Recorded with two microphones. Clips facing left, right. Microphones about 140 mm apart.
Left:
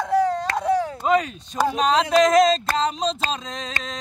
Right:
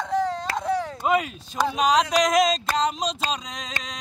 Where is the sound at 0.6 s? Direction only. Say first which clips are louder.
Left 4 dB; 10° left (ahead or behind).